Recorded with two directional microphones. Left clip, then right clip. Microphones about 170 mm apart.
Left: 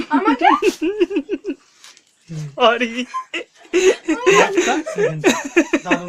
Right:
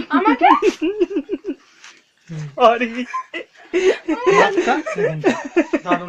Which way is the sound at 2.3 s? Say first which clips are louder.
Right 1 dB; 15° right (ahead or behind).